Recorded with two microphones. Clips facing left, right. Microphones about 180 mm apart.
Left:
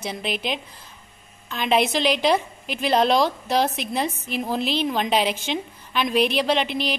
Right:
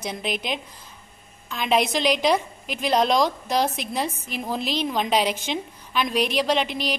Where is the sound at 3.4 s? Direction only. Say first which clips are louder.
Left 1 dB; 10° right (ahead or behind).